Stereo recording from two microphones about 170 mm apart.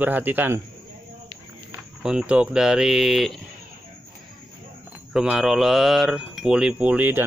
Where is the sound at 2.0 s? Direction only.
5° right (ahead or behind).